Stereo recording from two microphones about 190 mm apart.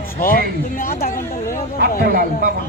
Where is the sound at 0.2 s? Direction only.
50° left (ahead or behind).